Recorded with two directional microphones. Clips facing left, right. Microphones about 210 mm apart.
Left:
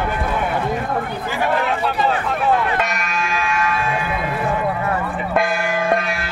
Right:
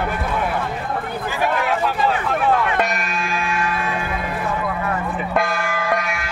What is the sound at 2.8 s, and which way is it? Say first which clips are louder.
Music: even; 35° right (ahead or behind).